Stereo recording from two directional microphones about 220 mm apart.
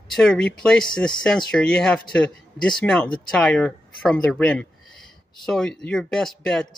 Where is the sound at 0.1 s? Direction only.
Centre (ahead or behind).